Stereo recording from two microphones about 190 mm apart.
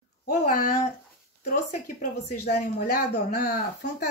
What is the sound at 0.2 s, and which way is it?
Speech, 45° left (ahead or behind).